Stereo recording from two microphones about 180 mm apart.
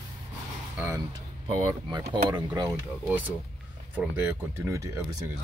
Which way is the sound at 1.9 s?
20° right (ahead or behind).